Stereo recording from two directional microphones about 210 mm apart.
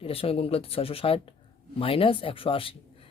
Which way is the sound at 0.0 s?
25° left (ahead or behind).